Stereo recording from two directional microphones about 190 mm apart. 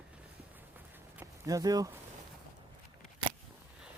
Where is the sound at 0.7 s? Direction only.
10° right (ahead or behind).